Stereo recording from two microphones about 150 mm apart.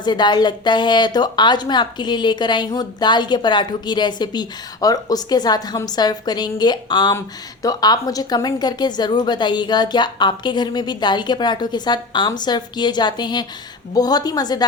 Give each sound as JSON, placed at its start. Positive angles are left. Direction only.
{"t": 0.0, "sound": "a woman's voice", "side_deg": 30}